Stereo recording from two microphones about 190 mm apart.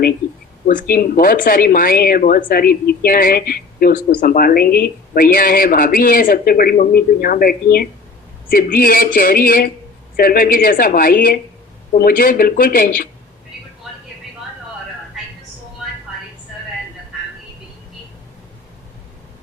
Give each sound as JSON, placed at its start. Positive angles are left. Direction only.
{"t": 0.7, "sound": "speech", "side_deg": 50}